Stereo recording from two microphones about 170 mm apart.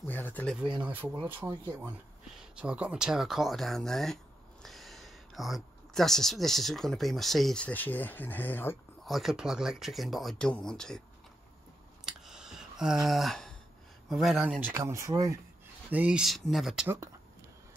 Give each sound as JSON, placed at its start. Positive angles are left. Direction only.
{"t": 0.0, "sound": "speech", "side_deg": 10}
{"t": 0.6, "sound": "speech", "side_deg": -10}
{"t": 9.0, "sound": "speech", "side_deg": 0}
{"t": 12.1, "sound": "a sound", "side_deg": -5}
{"t": 14.0, "sound": "speech", "side_deg": 0}
{"t": 14.7, "sound": "speech", "side_deg": -15}
{"t": 15.9, "sound": "speech", "side_deg": -5}
{"t": 16.8, "sound": "speech", "side_deg": -15}